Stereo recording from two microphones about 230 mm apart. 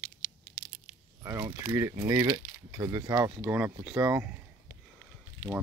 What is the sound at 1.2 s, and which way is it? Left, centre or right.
Speech, centre.